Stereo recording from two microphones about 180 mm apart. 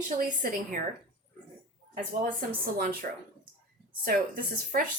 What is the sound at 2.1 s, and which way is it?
Speech, 50° right (ahead or behind).